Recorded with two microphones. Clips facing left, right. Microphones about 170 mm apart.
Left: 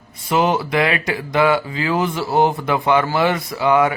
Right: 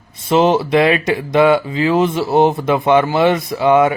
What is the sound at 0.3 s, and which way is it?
Speech, 25° right (ahead or behind).